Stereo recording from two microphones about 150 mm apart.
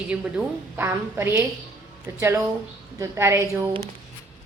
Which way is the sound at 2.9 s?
20° right (ahead or behind).